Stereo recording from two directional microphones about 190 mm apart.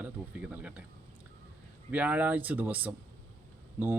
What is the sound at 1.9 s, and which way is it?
A man's voice, 5° right (ahead or behind).